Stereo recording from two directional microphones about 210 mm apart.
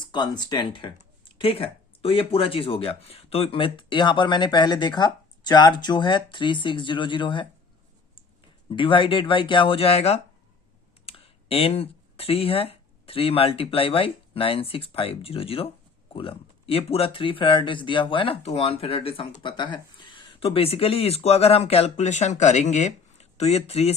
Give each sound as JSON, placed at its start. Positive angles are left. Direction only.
{"t": 0.1, "sound": "speech", "side_deg": 20}
{"t": 8.7, "sound": "speech", "side_deg": 25}